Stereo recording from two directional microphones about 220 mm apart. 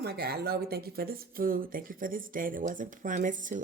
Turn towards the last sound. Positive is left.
turn(degrees=-35)  # may be behind; listen again after turning